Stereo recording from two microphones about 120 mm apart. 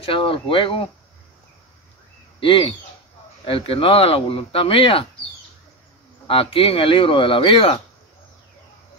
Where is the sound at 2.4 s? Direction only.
45° left (ahead or behind).